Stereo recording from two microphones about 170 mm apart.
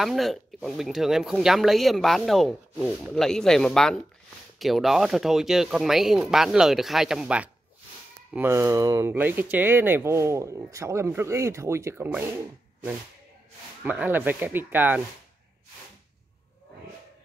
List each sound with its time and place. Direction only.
0.0 s speech: centre (ahead or behind)
13.8 s speech: 10° right (ahead or behind)